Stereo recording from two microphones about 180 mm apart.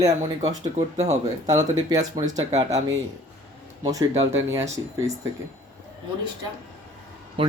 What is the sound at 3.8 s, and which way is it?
Speech, 20° right (ahead or behind).